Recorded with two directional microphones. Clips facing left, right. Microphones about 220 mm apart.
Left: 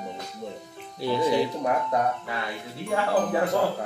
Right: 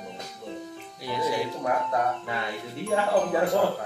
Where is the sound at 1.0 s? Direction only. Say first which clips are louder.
Left 5 dB; 30° left (ahead or behind).